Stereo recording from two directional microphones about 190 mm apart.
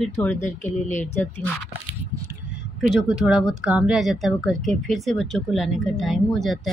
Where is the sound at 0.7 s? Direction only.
40° left (ahead or behind).